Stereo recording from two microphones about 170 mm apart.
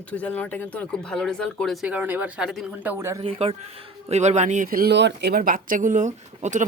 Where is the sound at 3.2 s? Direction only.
35° right (ahead or behind).